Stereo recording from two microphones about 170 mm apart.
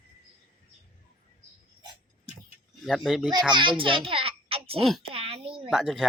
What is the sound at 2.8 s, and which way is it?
Speech, centre (ahead or behind).